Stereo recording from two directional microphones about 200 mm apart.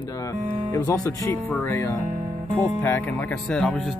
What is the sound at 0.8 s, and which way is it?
Speech, 15° left (ahead or behind).